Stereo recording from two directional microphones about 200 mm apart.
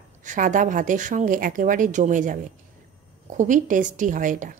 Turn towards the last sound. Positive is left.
turn(degrees=-40)  # may be behind; listen again after turning